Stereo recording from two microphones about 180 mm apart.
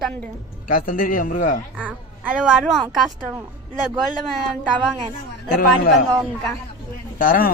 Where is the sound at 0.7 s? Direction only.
50° left (ahead or behind).